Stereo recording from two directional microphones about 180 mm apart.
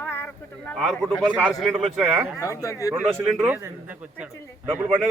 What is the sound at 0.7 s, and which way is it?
A man's voice, centre (ahead or behind).